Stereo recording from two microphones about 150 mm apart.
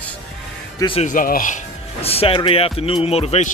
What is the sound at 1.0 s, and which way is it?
Speech, 65° left (ahead or behind).